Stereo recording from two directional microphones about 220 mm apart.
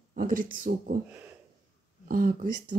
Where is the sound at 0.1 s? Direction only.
40° right (ahead or behind).